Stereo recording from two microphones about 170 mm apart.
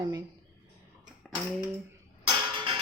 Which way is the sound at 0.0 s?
25° right (ahead or behind).